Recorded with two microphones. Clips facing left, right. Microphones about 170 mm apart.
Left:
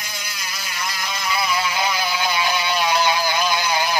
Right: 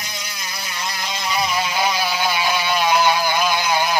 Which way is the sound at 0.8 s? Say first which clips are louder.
Even; 20° right (ahead or behind).